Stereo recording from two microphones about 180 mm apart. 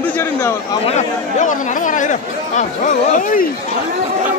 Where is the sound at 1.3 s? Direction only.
45° left (ahead or behind).